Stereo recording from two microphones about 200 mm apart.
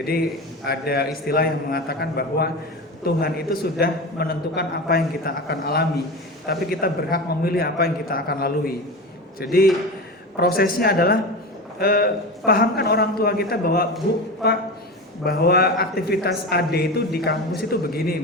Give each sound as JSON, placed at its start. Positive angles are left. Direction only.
{"t": 0.6, "sound": "a man's voice", "side_deg": 50}
{"t": 15.2, "sound": "a man's voice", "side_deg": 50}